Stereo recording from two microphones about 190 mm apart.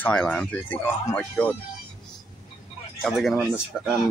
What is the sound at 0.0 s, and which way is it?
Speech, 5° left (ahead or behind).